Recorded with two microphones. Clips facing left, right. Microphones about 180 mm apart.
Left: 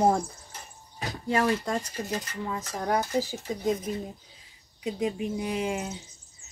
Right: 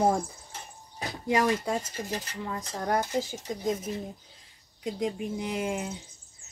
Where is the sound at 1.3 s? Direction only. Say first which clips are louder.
Even; 15° right (ahead or behind).